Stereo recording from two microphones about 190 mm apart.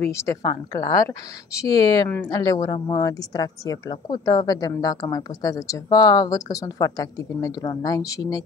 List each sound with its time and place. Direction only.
0.0 s a woman's voice: 15° left (ahead or behind)